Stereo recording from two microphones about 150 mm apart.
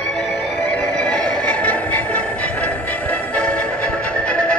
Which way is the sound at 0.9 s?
5° left (ahead or behind).